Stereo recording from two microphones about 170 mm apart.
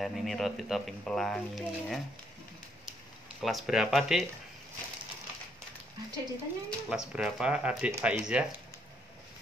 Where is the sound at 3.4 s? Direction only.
Centre (ahead or behind).